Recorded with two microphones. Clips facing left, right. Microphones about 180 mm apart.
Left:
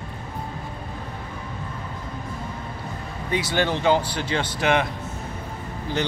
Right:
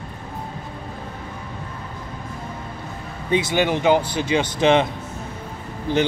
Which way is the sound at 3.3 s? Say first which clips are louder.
Right 4 dB; 20° right (ahead or behind).